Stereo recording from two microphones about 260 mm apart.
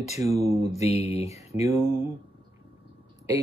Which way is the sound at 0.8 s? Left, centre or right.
Left.